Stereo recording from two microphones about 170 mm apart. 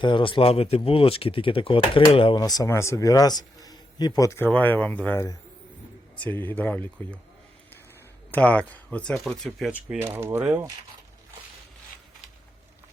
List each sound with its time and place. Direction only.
0.0 s speech: 30° left (ahead or behind); by 5.2 s 10° left (ahead or behind)
6.2 s speech: 10° left (ahead or behind)
8.3 s speech: 10° left (ahead or behind)
9.7 s speech: 10° right (ahead or behind)